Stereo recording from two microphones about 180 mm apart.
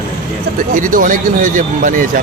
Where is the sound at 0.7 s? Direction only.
45° right (ahead or behind).